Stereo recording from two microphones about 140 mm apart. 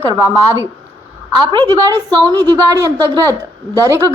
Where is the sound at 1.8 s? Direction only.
25° right (ahead or behind).